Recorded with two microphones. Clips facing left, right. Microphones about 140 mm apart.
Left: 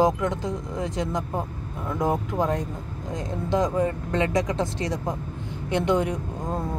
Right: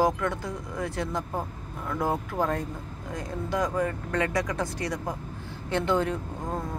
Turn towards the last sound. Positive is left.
turn(degrees=15)  # may be behind; listen again after turning